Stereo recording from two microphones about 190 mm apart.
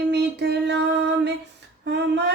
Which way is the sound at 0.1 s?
65° right (ahead or behind).